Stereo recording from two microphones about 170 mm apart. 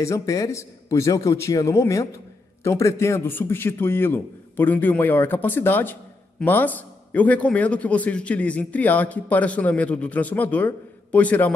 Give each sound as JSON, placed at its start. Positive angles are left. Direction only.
{"t": 0.0, "sound": "a man's voice", "side_deg": 20}